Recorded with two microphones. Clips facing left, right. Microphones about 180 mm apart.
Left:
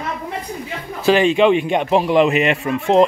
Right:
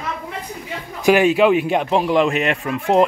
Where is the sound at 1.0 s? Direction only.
10° right (ahead or behind).